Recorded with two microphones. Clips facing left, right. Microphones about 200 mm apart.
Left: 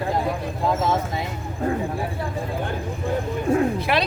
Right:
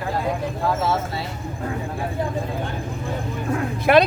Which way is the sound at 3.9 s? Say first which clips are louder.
Right 13 dB; 50° right (ahead or behind).